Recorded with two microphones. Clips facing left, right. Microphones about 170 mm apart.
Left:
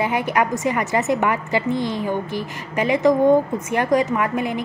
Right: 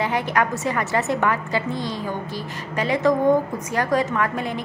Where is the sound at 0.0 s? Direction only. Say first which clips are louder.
Left 2 dB; 15° left (ahead or behind).